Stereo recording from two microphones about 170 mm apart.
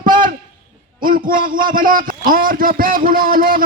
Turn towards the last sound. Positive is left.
turn(degrees=-55)  # may be behind; listen again after turning